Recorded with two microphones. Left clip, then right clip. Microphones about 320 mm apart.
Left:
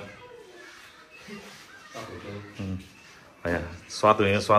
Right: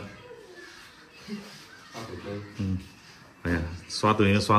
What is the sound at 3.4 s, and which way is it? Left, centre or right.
Speech, centre.